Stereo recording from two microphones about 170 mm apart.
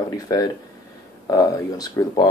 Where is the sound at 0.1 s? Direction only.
20° left (ahead or behind).